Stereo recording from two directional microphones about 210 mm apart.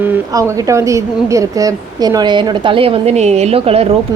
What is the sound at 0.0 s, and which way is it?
A woman's voice, 10° right (ahead or behind).